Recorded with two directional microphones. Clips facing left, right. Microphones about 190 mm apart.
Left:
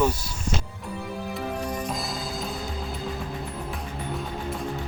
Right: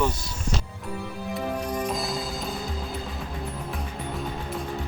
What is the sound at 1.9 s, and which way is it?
Music, centre (ahead or behind).